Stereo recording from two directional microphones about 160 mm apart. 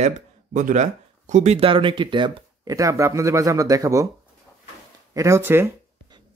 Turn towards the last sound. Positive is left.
turn(degrees=-15)  # may be behind; listen again after turning